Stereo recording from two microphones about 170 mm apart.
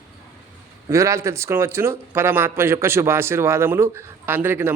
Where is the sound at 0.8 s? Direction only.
15° right (ahead or behind).